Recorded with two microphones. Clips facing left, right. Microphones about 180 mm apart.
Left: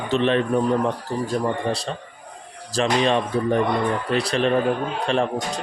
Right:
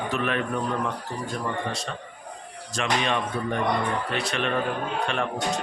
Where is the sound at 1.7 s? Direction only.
35° left (ahead or behind).